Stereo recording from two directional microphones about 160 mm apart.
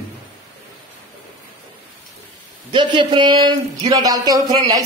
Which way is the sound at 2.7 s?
30° right (ahead or behind).